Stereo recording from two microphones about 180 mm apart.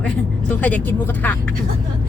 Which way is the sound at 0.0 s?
5° left (ahead or behind).